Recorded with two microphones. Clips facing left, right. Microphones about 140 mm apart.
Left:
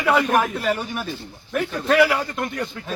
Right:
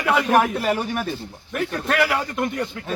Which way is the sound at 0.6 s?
60° right (ahead or behind).